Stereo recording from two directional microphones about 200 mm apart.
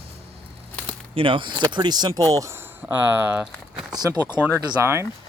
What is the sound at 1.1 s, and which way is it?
Speech, 25° right (ahead or behind).